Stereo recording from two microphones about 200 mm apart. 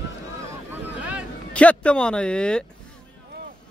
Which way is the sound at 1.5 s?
5° left (ahead or behind).